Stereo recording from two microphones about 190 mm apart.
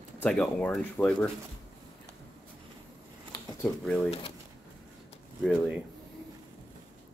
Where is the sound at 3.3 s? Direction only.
10° left (ahead or behind).